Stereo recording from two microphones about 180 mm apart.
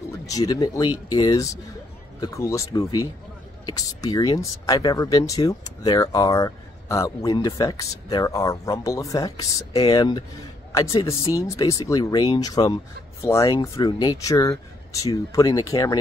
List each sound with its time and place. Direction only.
0.3 s speech: 20° left (ahead or behind)